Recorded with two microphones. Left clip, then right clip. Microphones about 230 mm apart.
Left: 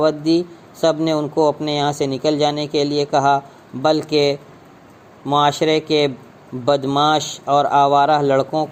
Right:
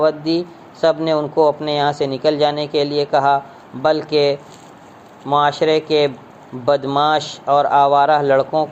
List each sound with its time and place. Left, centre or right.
0.0 s speech: left